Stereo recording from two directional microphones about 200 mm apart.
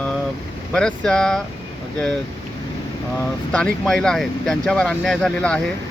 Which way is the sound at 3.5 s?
5° left (ahead or behind).